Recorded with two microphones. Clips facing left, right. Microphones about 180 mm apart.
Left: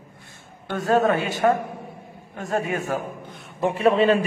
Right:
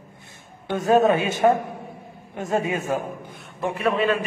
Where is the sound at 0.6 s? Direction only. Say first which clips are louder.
Right 2 dB; 20° right (ahead or behind).